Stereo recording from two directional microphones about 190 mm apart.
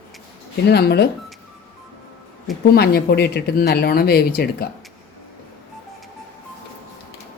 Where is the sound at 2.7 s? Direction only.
55° left (ahead or behind).